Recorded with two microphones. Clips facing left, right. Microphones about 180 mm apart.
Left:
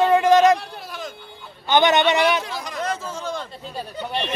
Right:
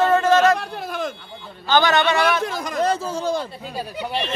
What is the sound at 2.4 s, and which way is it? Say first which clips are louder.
Speech: right 6 dB; 50° right (ahead or behind).